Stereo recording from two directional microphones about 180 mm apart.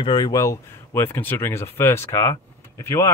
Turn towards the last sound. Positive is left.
turn(degrees=15)  # may be behind; listen again after turning